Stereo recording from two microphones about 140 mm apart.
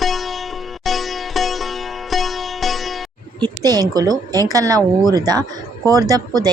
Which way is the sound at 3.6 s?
25° right (ahead or behind).